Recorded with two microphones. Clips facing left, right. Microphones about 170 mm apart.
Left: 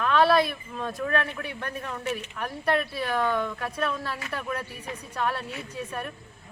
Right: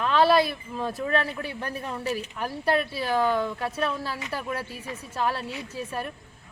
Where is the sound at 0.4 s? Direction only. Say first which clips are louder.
Right 2 dB; 30° right (ahead or behind).